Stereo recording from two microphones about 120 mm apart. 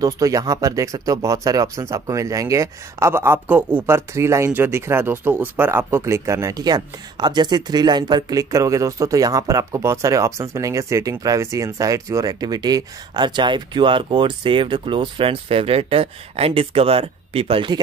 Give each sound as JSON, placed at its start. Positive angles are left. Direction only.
{"t": 0.0, "sound": "speech", "side_deg": -30}